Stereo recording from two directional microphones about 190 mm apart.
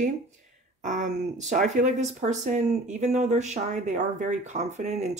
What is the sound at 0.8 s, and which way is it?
Speech, 40° right (ahead or behind).